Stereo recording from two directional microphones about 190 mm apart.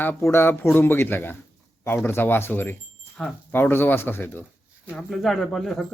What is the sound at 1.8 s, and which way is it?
Speech, 10° left (ahead or behind).